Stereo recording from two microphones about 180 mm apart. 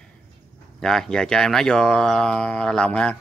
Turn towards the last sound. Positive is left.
turn(degrees=5)  # may be behind; listen again after turning